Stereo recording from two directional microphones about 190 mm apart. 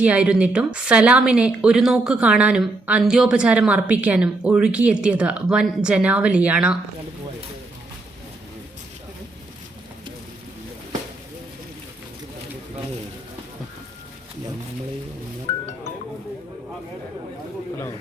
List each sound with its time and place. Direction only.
0.0 s a woman's voice: 5° right (ahead or behind)
15.5 s music: 30° left (ahead or behind)